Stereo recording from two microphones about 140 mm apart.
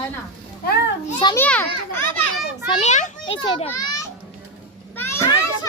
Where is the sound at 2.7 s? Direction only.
55° left (ahead or behind).